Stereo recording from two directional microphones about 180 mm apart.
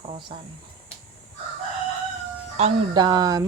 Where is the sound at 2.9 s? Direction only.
25° right (ahead or behind).